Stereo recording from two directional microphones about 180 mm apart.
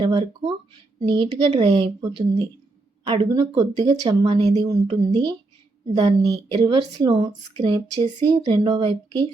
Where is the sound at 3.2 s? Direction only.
20° right (ahead or behind).